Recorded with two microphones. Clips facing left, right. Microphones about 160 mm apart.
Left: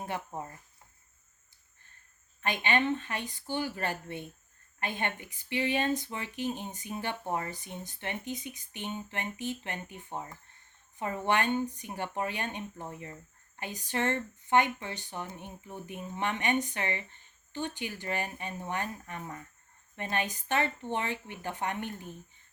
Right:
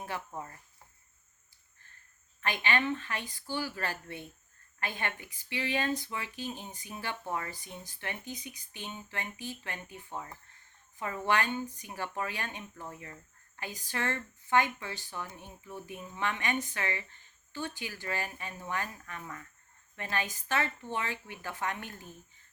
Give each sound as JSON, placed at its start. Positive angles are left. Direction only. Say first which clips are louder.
{"t": 0.0, "sound": "speech", "louder": "left 2 dB", "side_deg": 20}
{"t": 2.4, "sound": "speech", "louder": "left 2 dB", "side_deg": 20}